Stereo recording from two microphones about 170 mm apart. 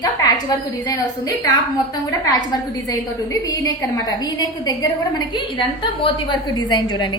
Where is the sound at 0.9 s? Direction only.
20° left (ahead or behind).